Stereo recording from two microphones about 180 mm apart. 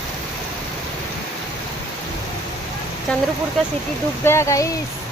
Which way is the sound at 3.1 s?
5° left (ahead or behind).